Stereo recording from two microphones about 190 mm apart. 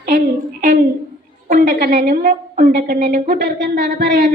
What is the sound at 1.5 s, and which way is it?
A woman's voice, 45° right (ahead or behind).